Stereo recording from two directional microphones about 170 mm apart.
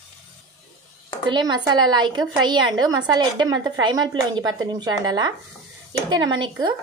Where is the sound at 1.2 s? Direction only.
25° right (ahead or behind).